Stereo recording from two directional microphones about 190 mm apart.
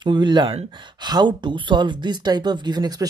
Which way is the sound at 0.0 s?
25° right (ahead or behind).